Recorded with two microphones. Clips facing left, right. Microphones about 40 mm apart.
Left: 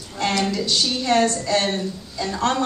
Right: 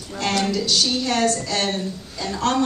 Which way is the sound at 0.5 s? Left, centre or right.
Left.